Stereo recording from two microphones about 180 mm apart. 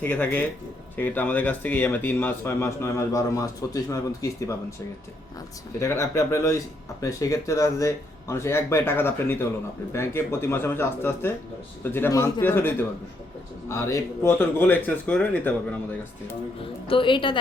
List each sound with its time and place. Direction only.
0.0 s a man's voice: 10° left (ahead or behind)
5.8 s a man's voice: 15° left (ahead or behind)
16.6 s a woman's voice: 30° left (ahead or behind)